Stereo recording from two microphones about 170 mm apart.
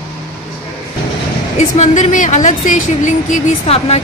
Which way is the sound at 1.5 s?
45° left (ahead or behind).